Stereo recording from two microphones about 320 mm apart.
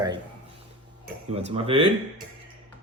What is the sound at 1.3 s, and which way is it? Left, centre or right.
Speech, centre.